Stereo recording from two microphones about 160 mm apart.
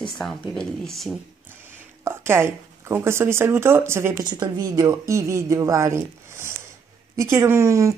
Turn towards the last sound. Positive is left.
turn(degrees=-20)  # may be behind; listen again after turning